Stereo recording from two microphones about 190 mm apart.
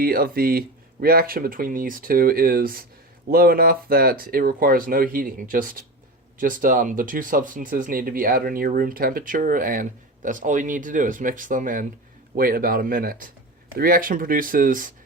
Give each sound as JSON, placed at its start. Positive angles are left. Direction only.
{"t": 0.0, "sound": "speech", "side_deg": -50}